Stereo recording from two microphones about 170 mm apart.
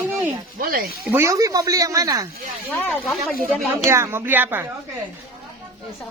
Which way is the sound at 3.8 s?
15° right (ahead or behind).